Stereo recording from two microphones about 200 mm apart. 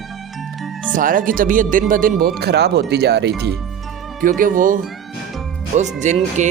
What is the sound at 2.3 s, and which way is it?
Speech, 55° right (ahead or behind).